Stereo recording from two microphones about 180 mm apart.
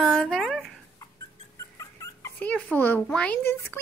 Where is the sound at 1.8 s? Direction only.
15° left (ahead or behind).